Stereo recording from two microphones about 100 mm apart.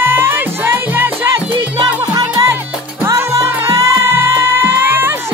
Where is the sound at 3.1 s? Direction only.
30° right (ahead or behind).